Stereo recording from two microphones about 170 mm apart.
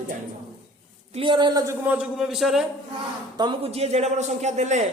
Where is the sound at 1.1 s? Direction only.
30° right (ahead or behind).